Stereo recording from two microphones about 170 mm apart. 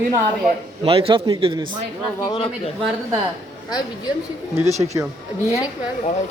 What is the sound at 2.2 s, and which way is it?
Speech, 30° left (ahead or behind).